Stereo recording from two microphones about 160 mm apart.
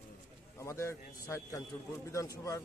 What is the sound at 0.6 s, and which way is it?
Speech, 15° left (ahead or behind).